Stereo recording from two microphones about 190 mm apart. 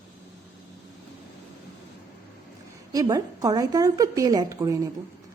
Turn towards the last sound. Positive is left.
turn(degrees=-20)  # may be behind; listen again after turning